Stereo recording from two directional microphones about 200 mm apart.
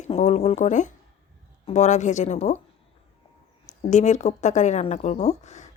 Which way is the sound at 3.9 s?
35° left (ahead or behind).